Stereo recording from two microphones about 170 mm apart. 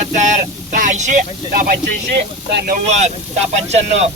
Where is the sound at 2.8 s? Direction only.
40° right (ahead or behind).